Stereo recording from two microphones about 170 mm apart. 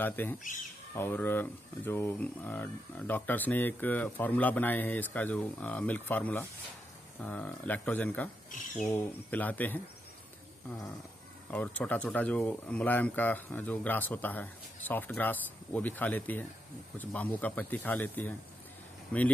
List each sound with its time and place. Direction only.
0.0 s speech: 10° left (ahead or behind)
11.5 s speech: 10° left (ahead or behind)